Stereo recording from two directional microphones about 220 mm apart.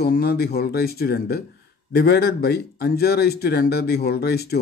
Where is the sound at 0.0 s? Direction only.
45° left (ahead or behind).